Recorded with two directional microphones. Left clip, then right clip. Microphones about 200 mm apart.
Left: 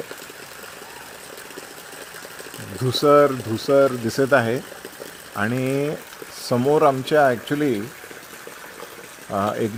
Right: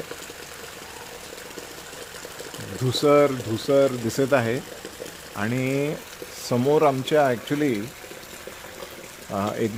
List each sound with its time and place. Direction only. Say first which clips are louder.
2.9 s speech: left 3 dB; 10° left (ahead or behind)
9.3 s speech: left 4 dB; 15° left (ahead or behind)